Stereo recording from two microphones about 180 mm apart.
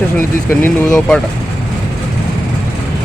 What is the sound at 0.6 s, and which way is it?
Speech, 5° left (ahead or behind).